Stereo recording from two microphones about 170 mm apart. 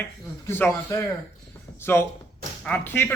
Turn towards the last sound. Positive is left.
turn(degrees=10)  # may be behind; listen again after turning